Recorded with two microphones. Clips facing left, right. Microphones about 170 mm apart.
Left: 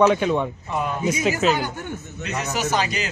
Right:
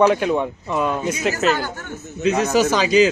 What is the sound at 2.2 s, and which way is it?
Speech, 90° right.